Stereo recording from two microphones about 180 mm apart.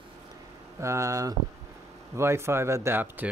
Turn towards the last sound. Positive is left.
turn(degrees=-10)  # may be behind; listen again after turning